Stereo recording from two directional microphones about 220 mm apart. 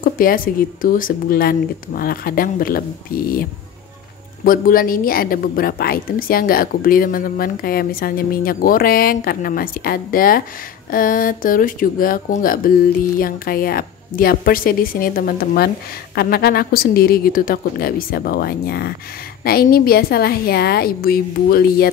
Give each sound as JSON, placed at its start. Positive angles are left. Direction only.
{"t": 0.0, "sound": "a woman's voice", "side_deg": 40}
{"t": 4.5, "sound": "a woman's voice", "side_deg": 40}